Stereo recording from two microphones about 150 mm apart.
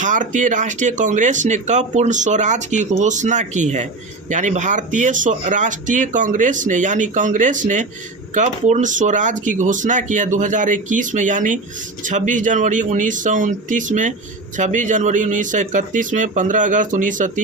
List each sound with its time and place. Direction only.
0.0 s speech: 60° right (ahead or behind)